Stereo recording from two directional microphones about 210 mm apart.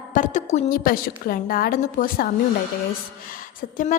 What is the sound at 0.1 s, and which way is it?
A woman's voice, 35° left (ahead or behind).